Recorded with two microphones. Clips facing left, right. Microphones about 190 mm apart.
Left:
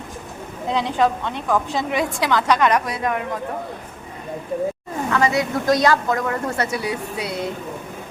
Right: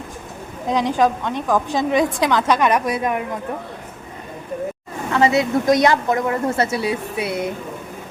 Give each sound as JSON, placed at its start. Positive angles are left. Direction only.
{"t": 0.7, "sound": "a woman's voice", "side_deg": -15}
{"t": 5.1, "sound": "a woman's voice", "side_deg": -25}